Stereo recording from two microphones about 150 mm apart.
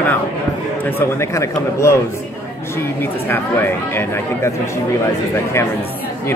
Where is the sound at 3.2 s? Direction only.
15° left (ahead or behind).